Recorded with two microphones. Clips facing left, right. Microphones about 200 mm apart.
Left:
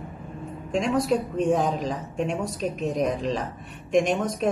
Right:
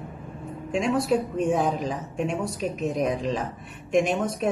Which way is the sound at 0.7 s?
5° right (ahead or behind).